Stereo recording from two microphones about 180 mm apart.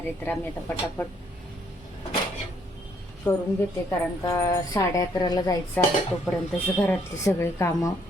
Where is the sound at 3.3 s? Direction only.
10° left (ahead or behind).